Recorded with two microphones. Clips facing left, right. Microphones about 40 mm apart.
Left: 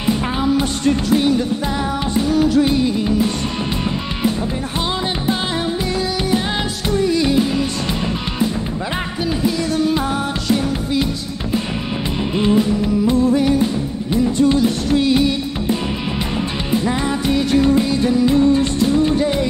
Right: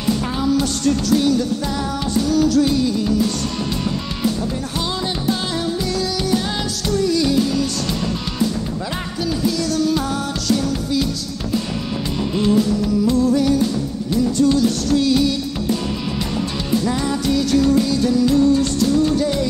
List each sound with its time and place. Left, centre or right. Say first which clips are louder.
0.0 s music: left 2 dB; left
6.9 s music: left 1 dB; left
9.4 s music: left 1 dB; left
12.4 s music: left 1 dB; left